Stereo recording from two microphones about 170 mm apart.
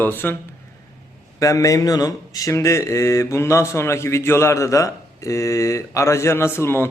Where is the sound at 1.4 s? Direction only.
20° left (ahead or behind).